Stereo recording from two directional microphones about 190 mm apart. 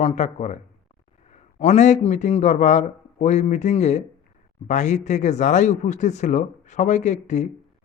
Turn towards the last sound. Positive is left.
turn(degrees=40)  # may be behind; listen again after turning